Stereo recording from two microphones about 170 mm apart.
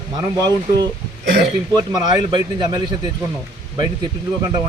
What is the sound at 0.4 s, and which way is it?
Speech, 25° right (ahead or behind).